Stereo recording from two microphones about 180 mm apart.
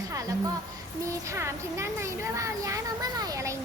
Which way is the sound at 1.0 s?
15° right (ahead or behind).